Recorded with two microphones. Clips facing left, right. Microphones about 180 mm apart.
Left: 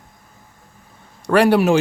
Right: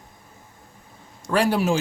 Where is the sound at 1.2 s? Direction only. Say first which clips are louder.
Left 7 dB; 65° left (ahead or behind).